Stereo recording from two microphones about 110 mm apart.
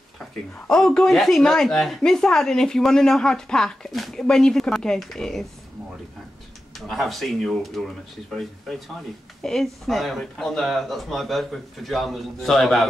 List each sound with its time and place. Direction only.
0.7 s speech: 5° left (ahead or behind)
6.9 s speech: centre (ahead or behind)